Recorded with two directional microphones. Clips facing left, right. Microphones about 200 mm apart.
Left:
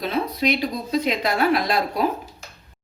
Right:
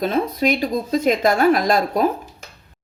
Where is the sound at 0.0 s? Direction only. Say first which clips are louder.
Right 4 dB; 45° right (ahead or behind).